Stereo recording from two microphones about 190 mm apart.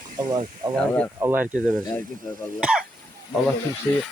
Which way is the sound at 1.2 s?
10° right (ahead or behind).